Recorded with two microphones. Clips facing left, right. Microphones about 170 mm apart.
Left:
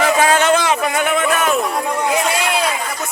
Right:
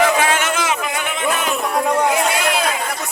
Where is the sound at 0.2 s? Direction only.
35° left (ahead or behind).